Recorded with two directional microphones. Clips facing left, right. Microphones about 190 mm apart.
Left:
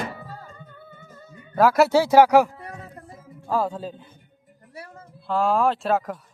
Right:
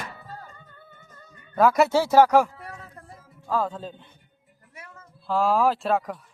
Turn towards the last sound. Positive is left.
turn(degrees=0)  # may be behind; listen again after turning